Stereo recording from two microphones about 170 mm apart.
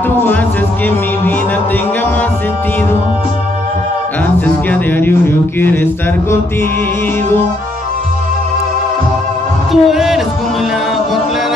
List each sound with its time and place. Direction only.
0.1 s music: 10° left (ahead or behind)
4.6 s a man's voice: 10° left (ahead or behind)
9.7 s a man's voice: centre (ahead or behind)